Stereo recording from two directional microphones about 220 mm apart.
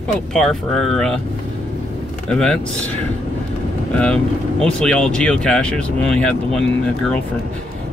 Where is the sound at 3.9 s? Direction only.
5° left (ahead or behind).